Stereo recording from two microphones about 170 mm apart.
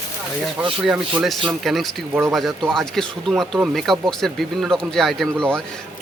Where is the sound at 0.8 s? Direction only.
5° right (ahead or behind).